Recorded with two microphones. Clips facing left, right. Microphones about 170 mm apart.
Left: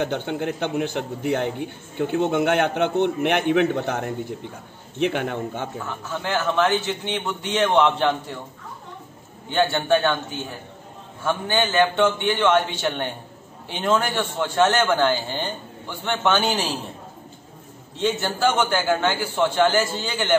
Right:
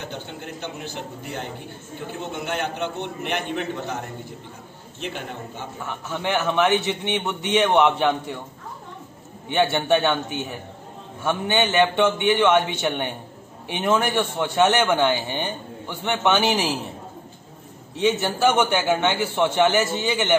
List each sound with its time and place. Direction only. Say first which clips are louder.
0.0 s a man's voice: left 10 dB; 65° left (ahead or behind)
5.0 s a man's voice: left 9 dB; 65° left (ahead or behind)
5.9 s a man's voice: right 1 dB; 20° right (ahead or behind)
9.5 s a man's voice: even; 20° right (ahead or behind)
11.2 s a man's voice: right 1 dB; 20° right (ahead or behind)
17.9 s a man's voice: right 2 dB; 15° right (ahead or behind)